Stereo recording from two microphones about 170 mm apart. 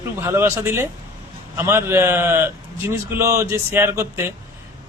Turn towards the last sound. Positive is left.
turn(degrees=-15)  # may be behind; listen again after turning